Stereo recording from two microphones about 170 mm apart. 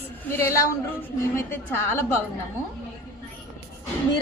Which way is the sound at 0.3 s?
15° left (ahead or behind).